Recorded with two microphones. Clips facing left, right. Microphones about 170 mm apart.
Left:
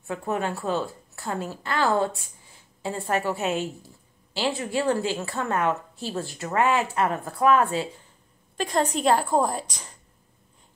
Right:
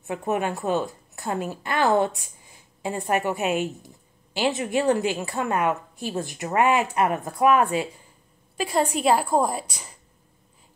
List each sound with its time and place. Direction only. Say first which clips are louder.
0.0 s a woman's voice: right 2 dB; 20° right (ahead or behind)